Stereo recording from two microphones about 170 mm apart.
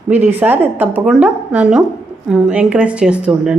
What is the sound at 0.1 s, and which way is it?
Speech, 10° right (ahead or behind).